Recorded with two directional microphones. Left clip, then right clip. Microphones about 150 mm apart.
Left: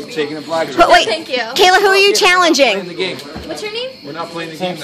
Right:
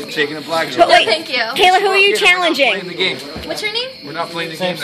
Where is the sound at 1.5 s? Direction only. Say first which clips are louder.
Left 2 dB; 30° left (ahead or behind).